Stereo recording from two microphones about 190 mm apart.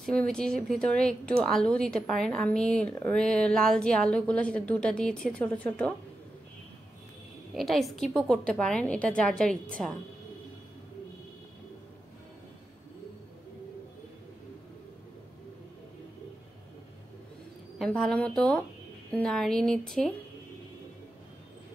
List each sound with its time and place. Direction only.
0.0 s a woman's voice: 5° left (ahead or behind)
7.5 s a woman's voice: centre (ahead or behind)
17.7 s a woman's voice: centre (ahead or behind)